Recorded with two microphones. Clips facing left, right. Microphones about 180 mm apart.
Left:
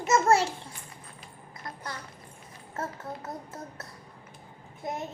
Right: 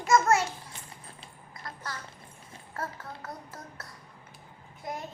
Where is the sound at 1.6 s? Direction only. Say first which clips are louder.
Left 1 dB; 20° left (ahead or behind).